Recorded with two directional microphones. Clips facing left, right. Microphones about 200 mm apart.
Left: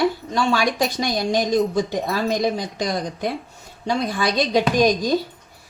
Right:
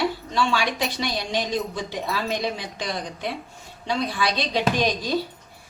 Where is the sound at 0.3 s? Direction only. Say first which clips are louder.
Left 3 dB; 45° left (ahead or behind).